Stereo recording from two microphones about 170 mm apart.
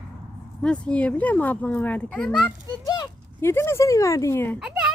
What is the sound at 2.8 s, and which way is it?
Speech, 20° left (ahead or behind).